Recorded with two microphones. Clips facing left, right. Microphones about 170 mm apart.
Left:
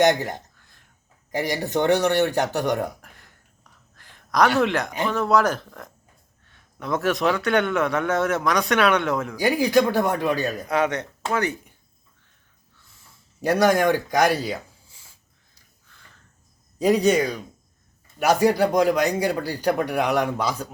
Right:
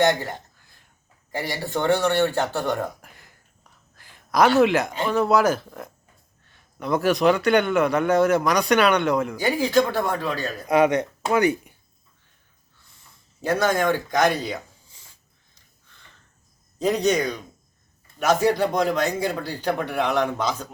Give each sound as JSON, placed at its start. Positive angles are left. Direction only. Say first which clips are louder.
{"t": 0.0, "sound": "speech", "louder": "left 2 dB", "side_deg": 20}
{"t": 0.5, "sound": "a sound", "louder": "even", "side_deg": -5}
{"t": 1.3, "sound": "speech", "louder": "left 3 dB", "side_deg": 15}
{"t": 3.0, "sound": "a sound", "louder": "even", "side_deg": 0}
{"t": 4.5, "sound": "a man's voice", "louder": "right 3 dB", "side_deg": -5}
{"t": 9.4, "sound": "speech", "louder": "left 4 dB", "side_deg": 15}
{"t": 10.7, "sound": "speech", "louder": "right 8 dB", "side_deg": -10}
{"t": 13.4, "sound": "speech", "louder": "left 3 dB", "side_deg": 15}
{"t": 16.7, "sound": "speech", "louder": "left 3 dB", "side_deg": 10}